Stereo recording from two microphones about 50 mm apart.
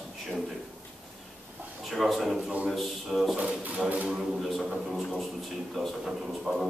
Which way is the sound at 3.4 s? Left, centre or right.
Right.